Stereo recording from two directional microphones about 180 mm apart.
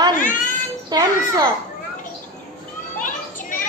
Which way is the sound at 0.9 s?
20° right (ahead or behind).